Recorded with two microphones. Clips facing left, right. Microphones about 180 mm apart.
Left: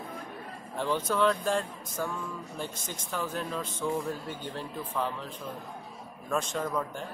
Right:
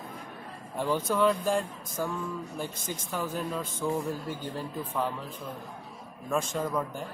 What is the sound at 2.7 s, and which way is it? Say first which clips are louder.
Speech: right 3 dB; 50° right (ahead or behind).